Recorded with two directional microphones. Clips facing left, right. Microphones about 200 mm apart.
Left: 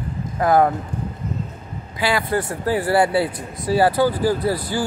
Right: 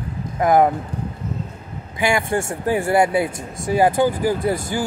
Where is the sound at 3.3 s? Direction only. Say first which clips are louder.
Even; 45° right (ahead or behind).